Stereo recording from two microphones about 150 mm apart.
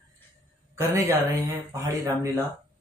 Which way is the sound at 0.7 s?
20° right (ahead or behind).